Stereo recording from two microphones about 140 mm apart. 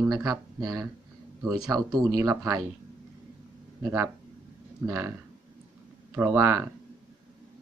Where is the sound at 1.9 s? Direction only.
25° right (ahead or behind).